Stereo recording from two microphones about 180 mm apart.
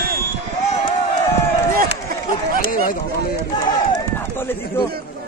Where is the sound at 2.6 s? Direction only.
55° left (ahead or behind).